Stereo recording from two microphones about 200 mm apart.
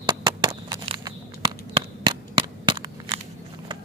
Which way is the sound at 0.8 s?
25° right (ahead or behind).